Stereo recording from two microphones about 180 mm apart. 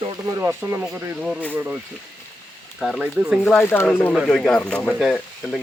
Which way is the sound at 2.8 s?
Centre (ahead or behind).